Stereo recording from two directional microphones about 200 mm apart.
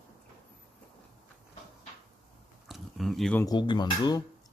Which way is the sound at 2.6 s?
Centre (ahead or behind).